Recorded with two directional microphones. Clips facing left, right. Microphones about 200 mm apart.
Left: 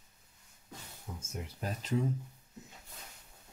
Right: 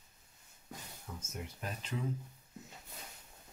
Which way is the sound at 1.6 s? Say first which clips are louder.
Left 8 dB; 40° left (ahead or behind).